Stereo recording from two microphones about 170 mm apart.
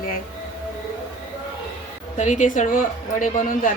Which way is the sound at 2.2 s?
45° left (ahead or behind).